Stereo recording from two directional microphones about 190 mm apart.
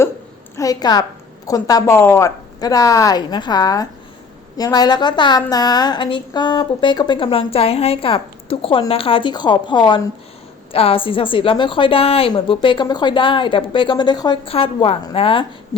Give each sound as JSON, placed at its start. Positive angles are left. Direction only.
{"t": 0.5, "sound": "a woman's voice", "side_deg": 20}